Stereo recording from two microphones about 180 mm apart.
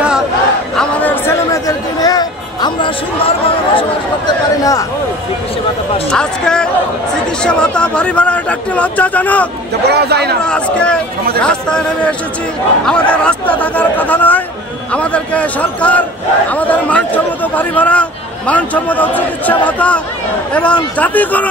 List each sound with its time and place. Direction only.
0.7 s a sound: 10° left (ahead or behind)
6.1 s a man's voice: 5° left (ahead or behind)
9.8 s a man's voice: 65° right (ahead or behind)
10.4 s a man's voice: 5° left (ahead or behind)